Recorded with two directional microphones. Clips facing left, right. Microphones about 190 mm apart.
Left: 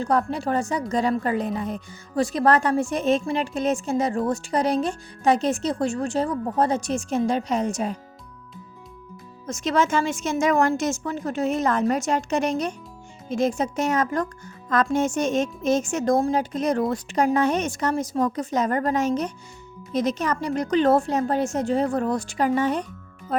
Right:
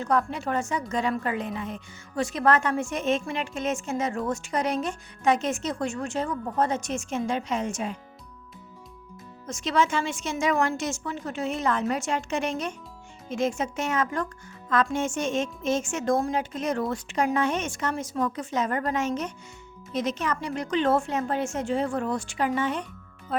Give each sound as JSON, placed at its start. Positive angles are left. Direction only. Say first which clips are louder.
{"t": 0.0, "sound": "speech", "louder": "left 3 dB", "side_deg": 35}
{"t": 9.5, "sound": "a woman's voice", "louder": "left 3 dB", "side_deg": 45}